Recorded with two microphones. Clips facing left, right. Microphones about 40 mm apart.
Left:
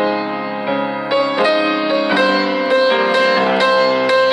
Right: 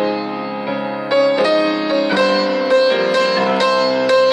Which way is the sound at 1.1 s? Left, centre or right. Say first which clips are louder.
Right 2 dB; centre.